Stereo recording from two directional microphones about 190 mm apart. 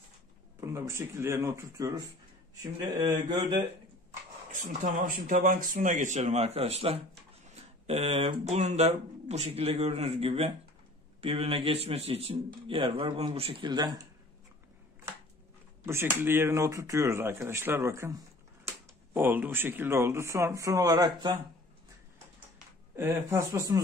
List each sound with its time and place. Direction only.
0.6 s a man's voice: 15° right (ahead or behind)
4.6 s a man's voice: 45° right (ahead or behind); by 13.9 s 20° right (ahead or behind)
15.8 s speech: 10° right (ahead or behind)
19.1 s speech: 10° right (ahead or behind)
22.9 s speech: 10° right (ahead or behind)